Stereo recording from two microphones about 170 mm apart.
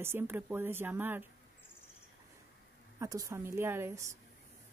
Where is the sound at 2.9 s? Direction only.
20° right (ahead or behind).